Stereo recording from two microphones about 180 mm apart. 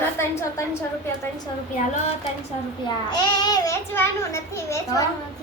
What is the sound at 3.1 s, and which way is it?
A child's voice, 25° left (ahead or behind).